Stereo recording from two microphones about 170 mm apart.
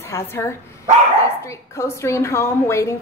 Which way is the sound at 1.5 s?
15° left (ahead or behind).